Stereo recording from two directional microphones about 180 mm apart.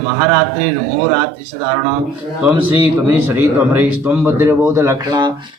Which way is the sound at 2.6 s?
10° right (ahead or behind).